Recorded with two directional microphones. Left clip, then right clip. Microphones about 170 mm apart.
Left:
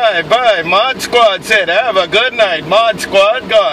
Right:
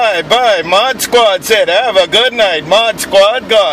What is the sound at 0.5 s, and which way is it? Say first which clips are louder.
Speech: right 1 dB; 30° right (ahead or behind).